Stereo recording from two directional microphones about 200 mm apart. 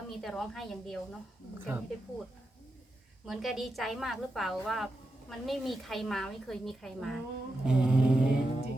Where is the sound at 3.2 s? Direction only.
Centre (ahead or behind).